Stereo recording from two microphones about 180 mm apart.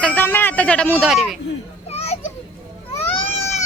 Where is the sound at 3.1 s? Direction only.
35° left (ahead or behind).